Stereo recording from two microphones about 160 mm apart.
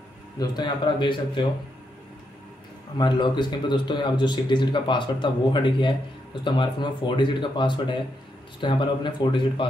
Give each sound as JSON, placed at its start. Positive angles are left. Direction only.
{"t": 0.4, "sound": "a man's voice", "side_deg": 30}
{"t": 3.0, "sound": "a man's voice", "side_deg": 30}